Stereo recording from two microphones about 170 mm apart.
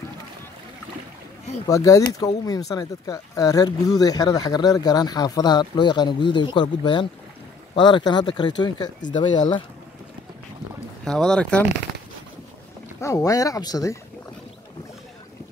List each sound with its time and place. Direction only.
1.7 s speech: 20° left (ahead or behind)
11.1 s speech: 5° left (ahead or behind)
13.0 s speech: 20° left (ahead or behind)